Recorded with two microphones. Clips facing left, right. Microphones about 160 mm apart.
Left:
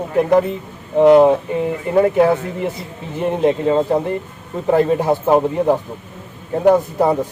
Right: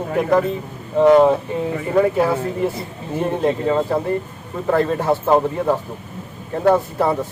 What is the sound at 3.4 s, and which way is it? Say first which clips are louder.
Speech: left 4 dB; 20° left (ahead or behind).